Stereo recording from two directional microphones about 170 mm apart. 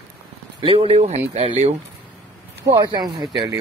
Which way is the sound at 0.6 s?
30° right (ahead or behind).